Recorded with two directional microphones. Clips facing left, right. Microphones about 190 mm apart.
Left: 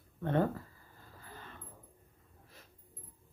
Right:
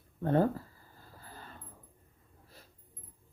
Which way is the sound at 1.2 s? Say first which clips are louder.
Right 1 dB; 35° right (ahead or behind).